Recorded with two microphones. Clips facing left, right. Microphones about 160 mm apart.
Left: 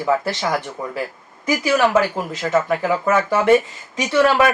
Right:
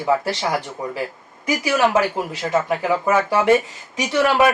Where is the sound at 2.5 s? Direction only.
15° right (ahead or behind).